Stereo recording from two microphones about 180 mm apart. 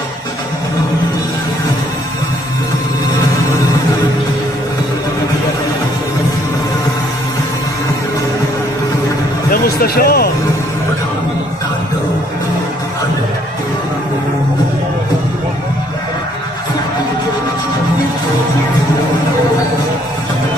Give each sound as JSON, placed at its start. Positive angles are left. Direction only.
{"t": 9.5, "sound": "music", "side_deg": 55}